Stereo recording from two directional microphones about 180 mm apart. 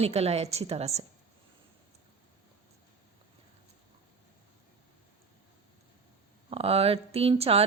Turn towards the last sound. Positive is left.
turn(degrees=-35)  # may be behind; listen again after turning